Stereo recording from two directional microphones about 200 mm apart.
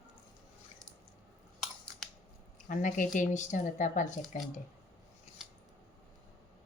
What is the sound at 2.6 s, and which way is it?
Speech, 40° left (ahead or behind).